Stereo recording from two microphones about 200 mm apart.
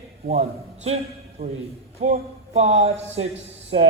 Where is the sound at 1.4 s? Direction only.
50° right (ahead or behind).